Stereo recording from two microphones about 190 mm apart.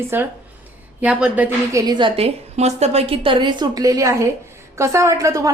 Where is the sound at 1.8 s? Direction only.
25° right (ahead or behind).